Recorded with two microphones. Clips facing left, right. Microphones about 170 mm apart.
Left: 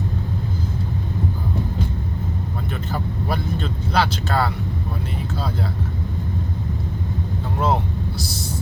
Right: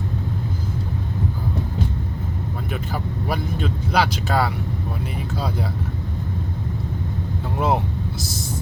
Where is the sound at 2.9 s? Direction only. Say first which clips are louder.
Left 1 dB; 10° right (ahead or behind).